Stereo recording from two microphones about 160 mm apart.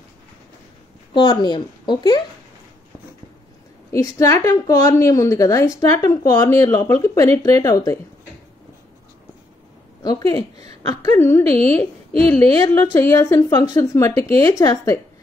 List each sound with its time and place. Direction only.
1.1 s a woman's voice: 25° left (ahead or behind)
3.9 s a woman's voice: 20° left (ahead or behind)
10.0 s a woman's voice: 25° left (ahead or behind)